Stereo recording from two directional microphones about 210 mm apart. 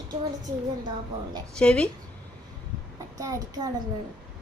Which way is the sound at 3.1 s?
15° right (ahead or behind).